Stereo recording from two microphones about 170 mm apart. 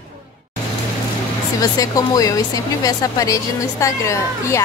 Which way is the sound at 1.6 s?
20° left (ahead or behind).